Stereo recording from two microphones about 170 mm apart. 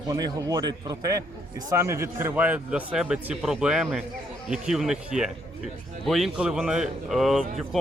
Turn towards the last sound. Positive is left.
turn(degrees=0)  # may be behind; listen again after turning